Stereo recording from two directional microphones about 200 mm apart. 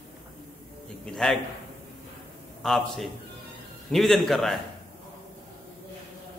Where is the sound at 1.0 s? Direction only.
5° left (ahead or behind).